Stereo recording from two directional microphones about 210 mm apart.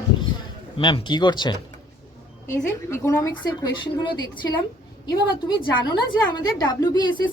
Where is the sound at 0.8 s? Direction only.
20° left (ahead or behind).